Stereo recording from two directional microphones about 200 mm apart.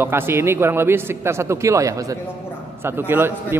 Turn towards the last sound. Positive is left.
turn(degrees=-10)  # may be behind; listen again after turning